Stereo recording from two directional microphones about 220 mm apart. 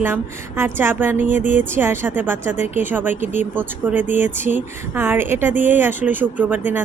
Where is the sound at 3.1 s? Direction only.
35° right (ahead or behind).